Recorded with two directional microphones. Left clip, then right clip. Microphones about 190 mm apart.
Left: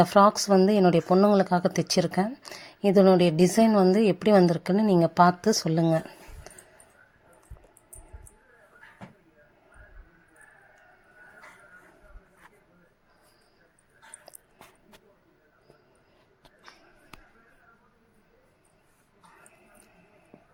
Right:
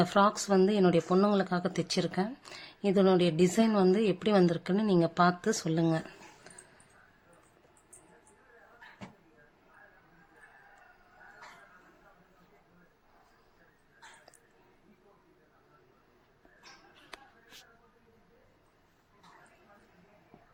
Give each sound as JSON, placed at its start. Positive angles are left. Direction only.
{"t": 0.0, "sound": "speech", "side_deg": 35}